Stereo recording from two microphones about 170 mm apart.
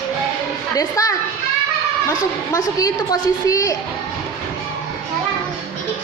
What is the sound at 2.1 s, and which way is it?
A woman's voice, 20° left (ahead or behind).